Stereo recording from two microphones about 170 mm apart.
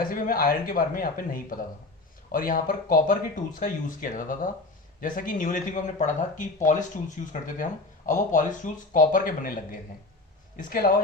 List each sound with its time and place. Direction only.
0.1 s a man's voice: 55° left (ahead or behind)
10.6 s a man's voice: 55° left (ahead or behind)